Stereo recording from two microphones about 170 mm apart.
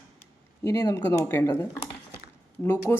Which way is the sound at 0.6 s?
20° left (ahead or behind).